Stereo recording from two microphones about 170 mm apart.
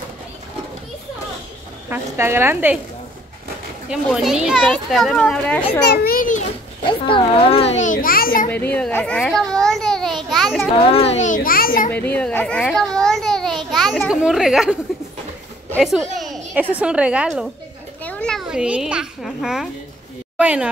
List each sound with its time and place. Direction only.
1.9 s speech: 15° right (ahead or behind)
3.9 s a child's voice: 5° right (ahead or behind)
5.9 s children playing: 60° left (ahead or behind)
7.1 s speech: 30° left (ahead or behind)
7.8 s a child's voice: 55° left (ahead or behind)
8.7 s a child's voice: 5° left (ahead or behind)
10.3 s a sound: centre (ahead or behind)
10.9 s speech: 35° left (ahead or behind)
11.2 s a child's voice: 55° left (ahead or behind)
11.9 s a child's voice: 10° left (ahead or behind)
15.8 s a child's voice: centre (ahead or behind)
16.2 s a sound: centre (ahead or behind)
16.8 s speech: 5° right (ahead or behind)
18.0 s a child's voice: 5° left (ahead or behind)